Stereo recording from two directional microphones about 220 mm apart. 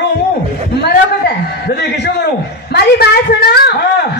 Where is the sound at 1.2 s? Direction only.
45° left (ahead or behind).